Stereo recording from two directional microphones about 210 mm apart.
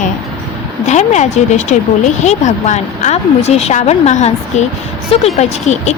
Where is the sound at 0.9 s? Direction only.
35° left (ahead or behind).